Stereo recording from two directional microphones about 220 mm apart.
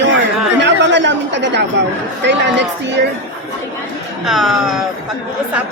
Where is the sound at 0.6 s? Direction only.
55° right (ahead or behind).